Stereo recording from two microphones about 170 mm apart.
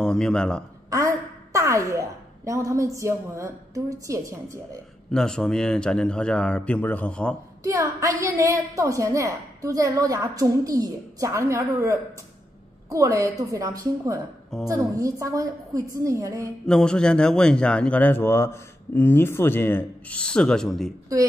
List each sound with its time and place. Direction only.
0.0 s speech: 5° left (ahead or behind)
1.5 s a woman's voice: 20° right (ahead or behind)
5.1 s speech: 5° left (ahead or behind)
7.6 s a woman's voice: 20° right (ahead or behind)
16.6 s a man's voice: 5° left (ahead or behind)